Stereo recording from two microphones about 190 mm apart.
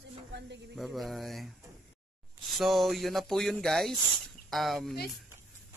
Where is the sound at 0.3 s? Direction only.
60° right (ahead or behind).